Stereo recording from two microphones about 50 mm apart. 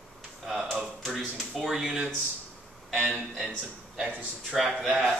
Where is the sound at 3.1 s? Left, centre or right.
Centre.